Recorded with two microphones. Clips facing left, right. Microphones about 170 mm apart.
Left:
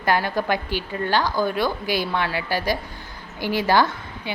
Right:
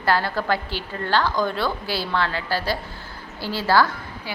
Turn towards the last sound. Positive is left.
turn(degrees=20)  # may be behind; listen again after turning